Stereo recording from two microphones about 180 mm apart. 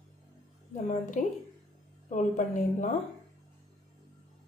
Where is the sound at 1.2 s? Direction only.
45° left (ahead or behind).